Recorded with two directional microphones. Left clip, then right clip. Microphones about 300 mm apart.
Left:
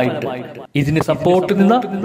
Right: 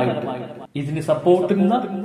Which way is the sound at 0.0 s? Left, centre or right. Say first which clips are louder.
Left 3 dB; left.